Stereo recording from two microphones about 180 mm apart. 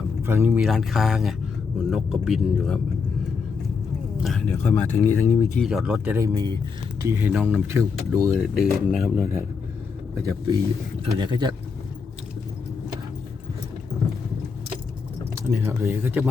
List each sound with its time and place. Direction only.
0.2 s speech: 15° right (ahead or behind)
4.2 s speech: centre (ahead or behind)
4.7 s speech: 10° left (ahead or behind)
5.5 s speech: centre (ahead or behind)
6.1 s speech: 20° right (ahead or behind)
8.6 s speech: centre (ahead or behind)
10.2 s speech: 20° right (ahead or behind)
15.4 s speech: 15° right (ahead or behind)